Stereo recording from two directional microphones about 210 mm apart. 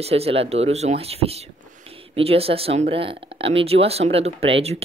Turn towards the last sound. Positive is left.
turn(degrees=-30)  # may be behind; listen again after turning